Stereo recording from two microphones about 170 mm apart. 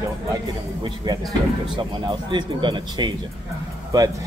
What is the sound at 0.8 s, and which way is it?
A man's voice, 25° right (ahead or behind).